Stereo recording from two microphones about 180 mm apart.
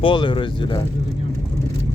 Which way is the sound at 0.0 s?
25° left (ahead or behind).